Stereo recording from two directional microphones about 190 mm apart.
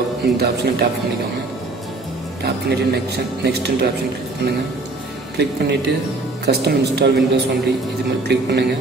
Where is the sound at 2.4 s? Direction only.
60° right (ahead or behind).